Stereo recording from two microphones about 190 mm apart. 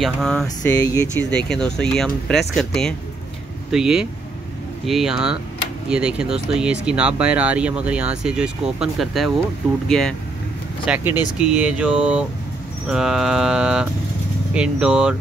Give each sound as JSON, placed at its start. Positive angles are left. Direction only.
{"t": 0.0, "sound": "speech", "side_deg": 0}
{"t": 0.6, "sound": "speech", "side_deg": 20}
{"t": 1.3, "sound": "speech", "side_deg": 5}
{"t": 10.9, "sound": "speech", "side_deg": -10}